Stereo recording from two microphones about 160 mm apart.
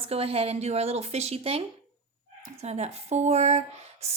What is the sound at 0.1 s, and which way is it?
Speech, 40° right (ahead or behind).